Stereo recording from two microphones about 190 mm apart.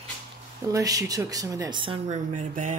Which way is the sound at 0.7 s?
20° right (ahead or behind).